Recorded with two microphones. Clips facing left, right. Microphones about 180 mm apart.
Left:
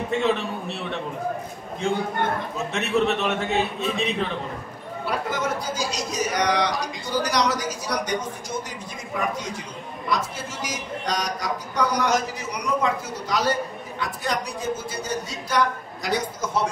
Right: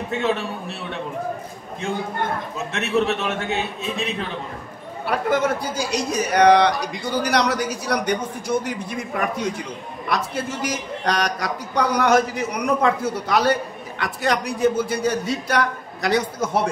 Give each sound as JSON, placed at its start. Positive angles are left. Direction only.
{"t": 0.1, "sound": "a man's voice", "side_deg": 0}
{"t": 2.7, "sound": "a man's voice", "side_deg": 0}
{"t": 5.3, "sound": "a man's voice", "side_deg": -60}
{"t": 10.0, "sound": "a man's voice", "side_deg": -60}